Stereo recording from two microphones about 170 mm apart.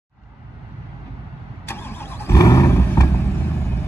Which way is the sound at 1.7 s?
15° left (ahead or behind).